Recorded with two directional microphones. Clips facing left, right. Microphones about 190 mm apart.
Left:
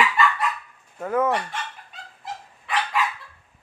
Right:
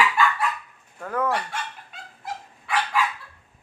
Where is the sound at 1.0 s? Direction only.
20° left (ahead or behind).